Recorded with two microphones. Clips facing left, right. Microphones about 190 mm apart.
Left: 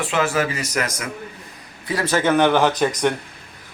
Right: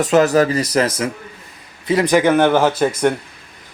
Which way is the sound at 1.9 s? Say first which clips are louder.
Right 6 dB; 20° right (ahead or behind).